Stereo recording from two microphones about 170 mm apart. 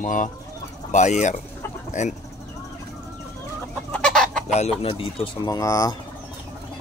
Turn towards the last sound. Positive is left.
turn(degrees=20)  # may be behind; listen again after turning